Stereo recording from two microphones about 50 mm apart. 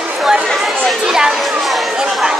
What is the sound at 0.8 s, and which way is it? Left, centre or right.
Speech, centre.